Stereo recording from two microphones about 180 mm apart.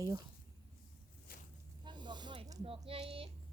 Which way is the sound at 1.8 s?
25° right (ahead or behind).